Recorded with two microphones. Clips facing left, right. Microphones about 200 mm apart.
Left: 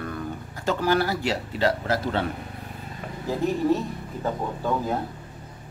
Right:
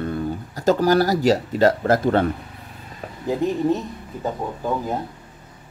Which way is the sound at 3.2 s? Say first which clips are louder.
Right 2 dB; 15° right (ahead or behind).